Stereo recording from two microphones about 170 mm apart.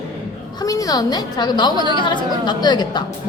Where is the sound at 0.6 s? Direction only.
20° left (ahead or behind).